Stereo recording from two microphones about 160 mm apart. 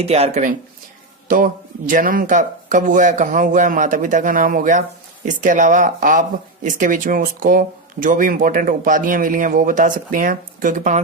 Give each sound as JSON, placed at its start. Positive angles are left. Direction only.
{"t": 0.0, "sound": "speech", "side_deg": -40}
{"t": 1.9, "sound": "speech", "side_deg": -60}